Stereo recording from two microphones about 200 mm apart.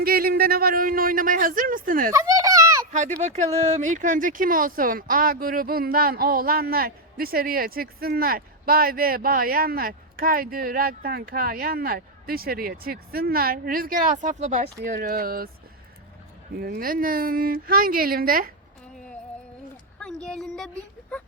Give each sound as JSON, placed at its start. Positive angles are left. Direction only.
{"t": 0.0, "sound": "speech", "side_deg": -50}
{"t": 2.1, "sound": "a sound", "side_deg": -15}
{"t": 3.2, "sound": "speech", "side_deg": -35}
{"t": 16.6, "sound": "speech", "side_deg": -50}
{"t": 20.2, "sound": "speech", "side_deg": 0}